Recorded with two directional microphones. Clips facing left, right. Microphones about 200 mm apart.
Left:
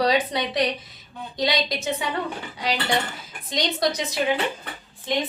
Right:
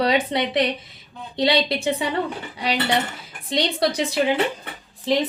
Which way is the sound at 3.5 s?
30° right (ahead or behind).